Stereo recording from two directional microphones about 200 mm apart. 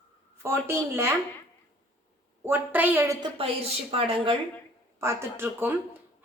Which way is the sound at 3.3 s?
30° right (ahead or behind).